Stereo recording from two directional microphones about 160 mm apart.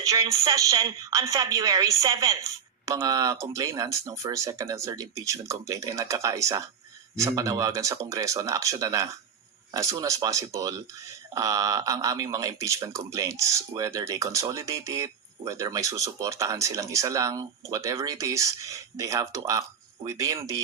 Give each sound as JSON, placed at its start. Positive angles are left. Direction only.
{"t": 0.0, "sound": "a woman's voice", "side_deg": -20}